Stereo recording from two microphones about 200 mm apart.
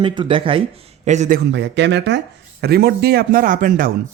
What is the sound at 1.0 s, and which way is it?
Speech, 35° right (ahead or behind).